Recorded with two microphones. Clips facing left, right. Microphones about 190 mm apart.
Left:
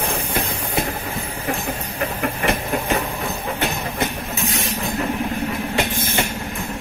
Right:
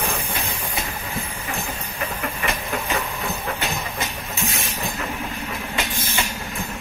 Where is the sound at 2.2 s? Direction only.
55° left (ahead or behind).